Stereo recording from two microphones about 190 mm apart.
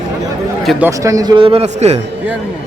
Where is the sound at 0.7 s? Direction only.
10° right (ahead or behind); by 1.9 s 35° right (ahead or behind).